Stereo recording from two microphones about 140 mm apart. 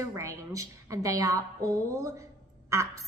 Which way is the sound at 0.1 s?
20° right (ahead or behind).